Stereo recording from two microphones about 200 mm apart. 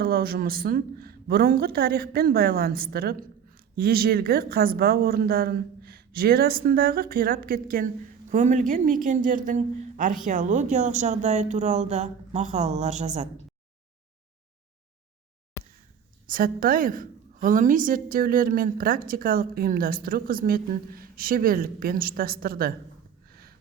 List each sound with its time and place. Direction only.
0.0 s a woman's voice: 50° right (ahead or behind)
15.6 s a sound: 15° left (ahead or behind)
16.2 s a woman's voice: 45° right (ahead or behind)